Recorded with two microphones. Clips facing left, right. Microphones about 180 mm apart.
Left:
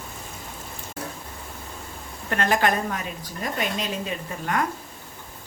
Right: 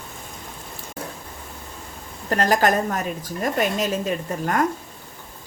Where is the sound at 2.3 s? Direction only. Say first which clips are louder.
Right 3 dB; 40° right (ahead or behind).